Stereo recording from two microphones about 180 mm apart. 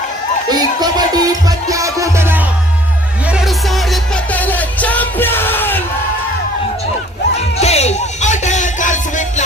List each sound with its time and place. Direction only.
0.5 s music: 20° right (ahead or behind)
3.3 s music: centre (ahead or behind)
7.6 s music: 35° left (ahead or behind)